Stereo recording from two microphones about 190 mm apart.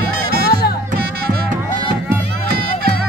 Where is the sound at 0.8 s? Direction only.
50° right (ahead or behind).